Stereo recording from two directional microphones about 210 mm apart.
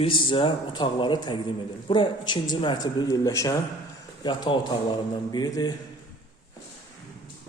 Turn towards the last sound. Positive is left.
turn(degrees=20)  # may be behind; listen again after turning